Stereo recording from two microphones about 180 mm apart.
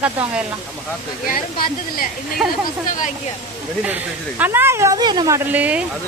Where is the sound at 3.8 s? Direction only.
10° right (ahead or behind).